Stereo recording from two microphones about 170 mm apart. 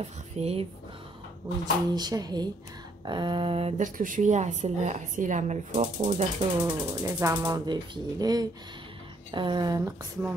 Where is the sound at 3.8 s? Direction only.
50° right (ahead or behind).